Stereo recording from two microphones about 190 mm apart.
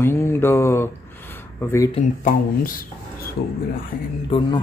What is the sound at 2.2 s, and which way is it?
Speech, 45° left (ahead or behind).